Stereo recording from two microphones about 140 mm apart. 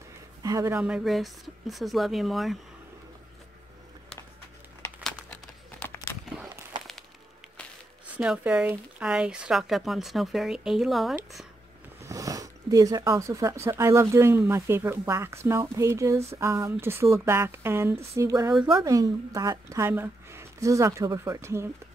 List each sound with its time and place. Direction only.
0.4 s speech: 25° right (ahead or behind)
0.8 s speech: 5° right (ahead or behind)
5.3 s a sound: 15° left (ahead or behind)
8.2 s speech: 5° right (ahead or behind)
12.0 s speech: 25° right (ahead or behind)